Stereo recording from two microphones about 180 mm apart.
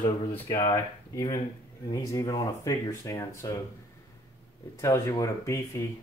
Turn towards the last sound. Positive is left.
turn(degrees=15)  # may be behind; listen again after turning